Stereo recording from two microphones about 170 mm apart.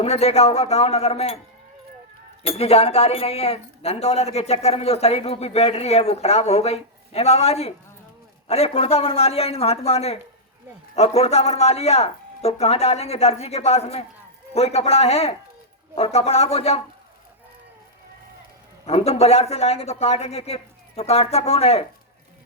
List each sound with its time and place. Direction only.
0.0 s speech: 35° left (ahead or behind)
2.4 s speech: 35° left (ahead or behind)
18.9 s speech: 35° left (ahead or behind)